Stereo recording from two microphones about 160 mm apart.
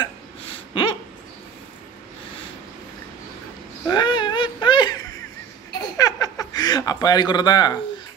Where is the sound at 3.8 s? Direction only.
30° left (ahead or behind).